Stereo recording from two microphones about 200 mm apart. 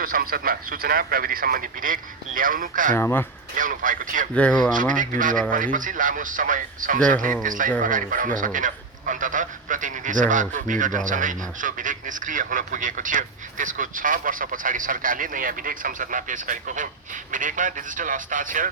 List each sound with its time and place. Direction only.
0.0 s speech: 45° right (ahead or behind)
2.9 s speech: 10° left (ahead or behind)
3.5 s speech: 40° right (ahead or behind)
4.4 s speech: 5° left (ahead or behind)
4.7 s speech: 40° right (ahead or behind)